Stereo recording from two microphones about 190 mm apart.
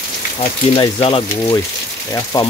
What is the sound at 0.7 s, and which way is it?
Speech, 25° left (ahead or behind).